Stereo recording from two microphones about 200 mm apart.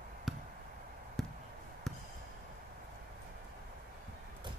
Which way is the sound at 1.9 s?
Centre (ahead or behind).